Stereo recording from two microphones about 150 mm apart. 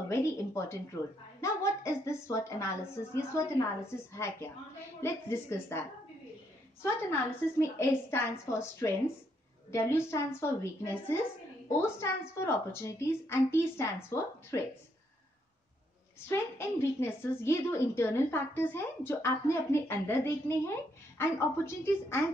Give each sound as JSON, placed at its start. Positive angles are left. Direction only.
{"t": 0.1, "sound": "a woman's voice", "side_deg": 20}
{"t": 7.5, "sound": "a woman's voice", "side_deg": 20}
{"t": 16.3, "sound": "a woman's voice", "side_deg": 15}